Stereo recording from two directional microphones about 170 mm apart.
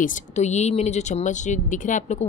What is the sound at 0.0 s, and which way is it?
Speech, 45° left (ahead or behind).